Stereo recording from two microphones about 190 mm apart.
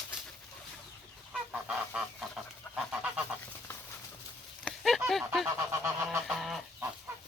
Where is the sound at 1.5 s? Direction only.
Centre (ahead or behind).